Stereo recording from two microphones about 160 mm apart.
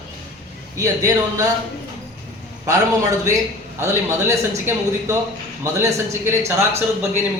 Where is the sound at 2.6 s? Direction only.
20° right (ahead or behind).